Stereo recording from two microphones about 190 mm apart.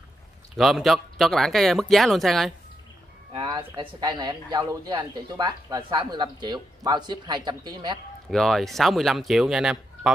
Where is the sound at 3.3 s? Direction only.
25° right (ahead or behind).